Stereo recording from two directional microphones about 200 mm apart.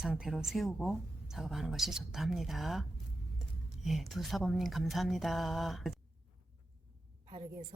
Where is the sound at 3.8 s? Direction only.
Centre (ahead or behind).